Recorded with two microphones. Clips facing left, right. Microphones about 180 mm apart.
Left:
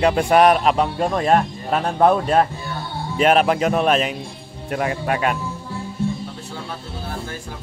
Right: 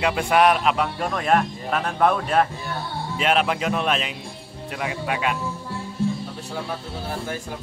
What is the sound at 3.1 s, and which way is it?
Speech, 45° left (ahead or behind).